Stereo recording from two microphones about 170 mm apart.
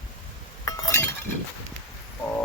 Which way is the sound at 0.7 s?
20° left (ahead or behind).